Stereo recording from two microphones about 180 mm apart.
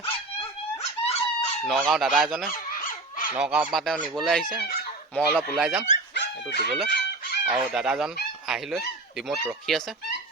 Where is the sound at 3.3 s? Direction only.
5° right (ahead or behind).